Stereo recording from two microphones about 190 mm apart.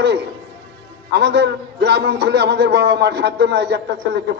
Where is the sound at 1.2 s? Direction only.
60° right (ahead or behind).